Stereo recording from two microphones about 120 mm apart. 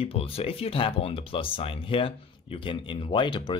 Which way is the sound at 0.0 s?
55° left (ahead or behind).